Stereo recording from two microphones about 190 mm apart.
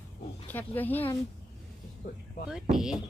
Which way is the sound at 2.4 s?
Centre (ahead or behind).